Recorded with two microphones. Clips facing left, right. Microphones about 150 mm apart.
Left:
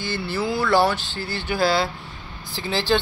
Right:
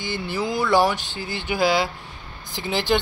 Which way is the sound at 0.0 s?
15° right (ahead or behind).